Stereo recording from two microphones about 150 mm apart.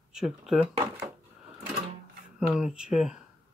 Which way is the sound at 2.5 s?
5° right (ahead or behind).